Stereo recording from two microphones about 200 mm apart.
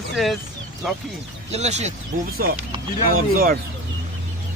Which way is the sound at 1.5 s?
35° right (ahead or behind).